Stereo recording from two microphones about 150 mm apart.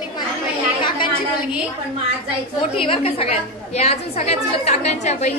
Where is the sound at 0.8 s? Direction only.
30° left (ahead or behind).